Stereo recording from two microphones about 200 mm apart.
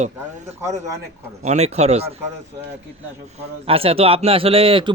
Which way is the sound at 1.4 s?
35° right (ahead or behind).